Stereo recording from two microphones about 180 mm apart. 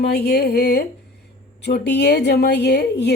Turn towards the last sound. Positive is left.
turn(degrees=65)  # may be behind; listen again after turning